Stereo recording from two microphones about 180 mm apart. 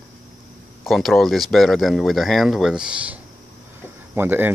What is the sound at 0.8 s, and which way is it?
Speech, centre (ahead or behind).